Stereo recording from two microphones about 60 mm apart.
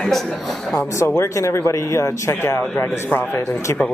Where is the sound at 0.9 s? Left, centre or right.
Left.